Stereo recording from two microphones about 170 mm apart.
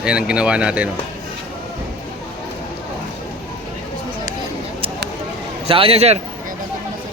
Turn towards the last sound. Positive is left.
turn(degrees=-40)  # may be behind; listen again after turning